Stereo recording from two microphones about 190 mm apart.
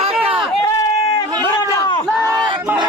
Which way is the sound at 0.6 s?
20° left (ahead or behind).